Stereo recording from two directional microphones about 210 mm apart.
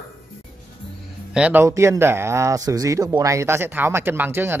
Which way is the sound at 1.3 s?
5° right (ahead or behind).